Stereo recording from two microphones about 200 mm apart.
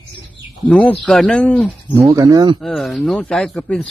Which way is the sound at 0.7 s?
5° left (ahead or behind).